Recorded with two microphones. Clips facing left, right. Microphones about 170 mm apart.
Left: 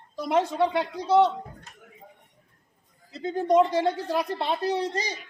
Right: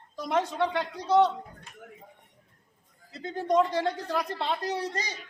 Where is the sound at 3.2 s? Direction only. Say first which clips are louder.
Left 4 dB; 20° left (ahead or behind).